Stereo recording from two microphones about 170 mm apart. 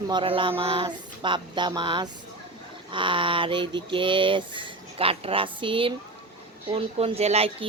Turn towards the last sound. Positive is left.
turn(degrees=-35)  # may be behind; listen again after turning